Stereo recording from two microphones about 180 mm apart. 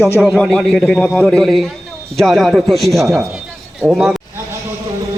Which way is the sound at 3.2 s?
Centre (ahead or behind).